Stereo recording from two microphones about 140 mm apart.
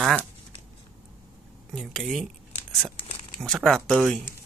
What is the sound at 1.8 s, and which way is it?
Speech, centre (ahead or behind).